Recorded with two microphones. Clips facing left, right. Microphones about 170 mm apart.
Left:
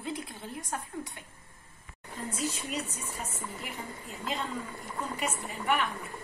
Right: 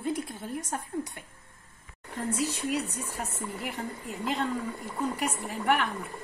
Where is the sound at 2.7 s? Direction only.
70° right (ahead or behind).